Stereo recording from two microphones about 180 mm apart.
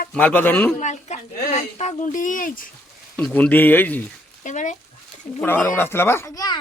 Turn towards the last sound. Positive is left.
turn(degrees=15)  # may be behind; listen again after turning